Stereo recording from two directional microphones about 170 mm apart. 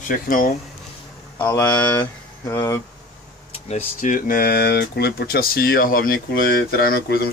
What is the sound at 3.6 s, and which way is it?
Speech, 40° left (ahead or behind).